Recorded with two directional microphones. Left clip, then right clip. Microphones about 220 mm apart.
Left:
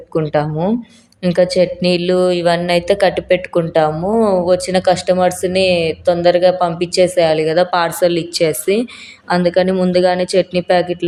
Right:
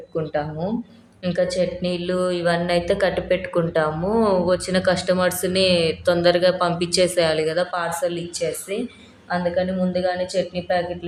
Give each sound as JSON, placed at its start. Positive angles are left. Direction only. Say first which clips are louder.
{"t": 0.1, "sound": "speech", "louder": "left 8 dB", "side_deg": 45}
{"t": 7.5, "sound": "speech", "louder": "left 9 dB", "side_deg": 40}